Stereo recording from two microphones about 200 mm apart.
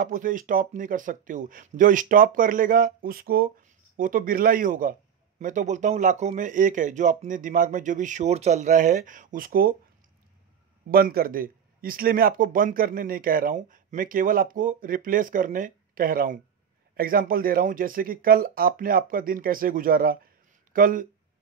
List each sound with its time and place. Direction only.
0.0 s speech: 40° right (ahead or behind)
10.9 s speech: 50° right (ahead or behind)